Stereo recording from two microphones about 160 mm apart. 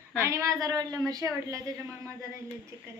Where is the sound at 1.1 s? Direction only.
20° right (ahead or behind).